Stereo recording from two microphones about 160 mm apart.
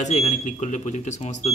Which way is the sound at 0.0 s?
45° left (ahead or behind).